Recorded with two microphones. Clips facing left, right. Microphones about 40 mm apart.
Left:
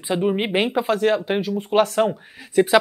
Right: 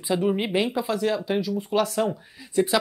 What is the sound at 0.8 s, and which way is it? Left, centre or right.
Speech, left.